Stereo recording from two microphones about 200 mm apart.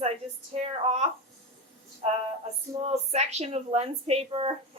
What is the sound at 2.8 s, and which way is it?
A woman's voice, 30° right (ahead or behind).